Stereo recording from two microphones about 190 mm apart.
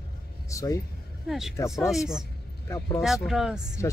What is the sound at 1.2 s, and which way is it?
Speech, centre (ahead or behind).